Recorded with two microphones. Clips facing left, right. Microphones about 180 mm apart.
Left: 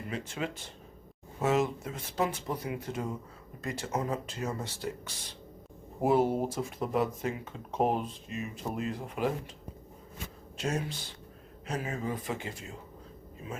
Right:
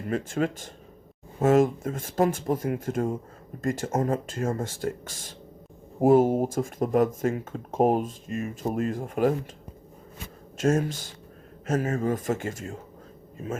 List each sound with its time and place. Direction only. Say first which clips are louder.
0.1 s speech: right 10 dB; 50° right (ahead or behind)
10.6 s speech: right 9 dB; 45° right (ahead or behind)